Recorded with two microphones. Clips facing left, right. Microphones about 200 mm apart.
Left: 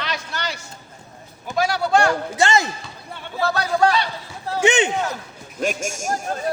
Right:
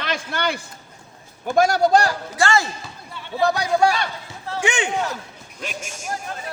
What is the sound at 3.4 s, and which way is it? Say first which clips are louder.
Speech: right 1 dB; 15° right (ahead or behind).